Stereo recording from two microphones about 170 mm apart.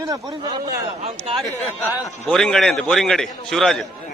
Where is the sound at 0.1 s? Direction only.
25° right (ahead or behind).